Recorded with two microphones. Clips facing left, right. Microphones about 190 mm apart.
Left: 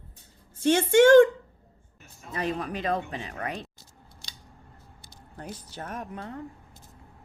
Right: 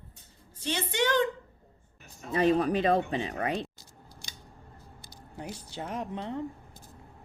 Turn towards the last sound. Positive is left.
turn(degrees=-25)  # may be behind; listen again after turning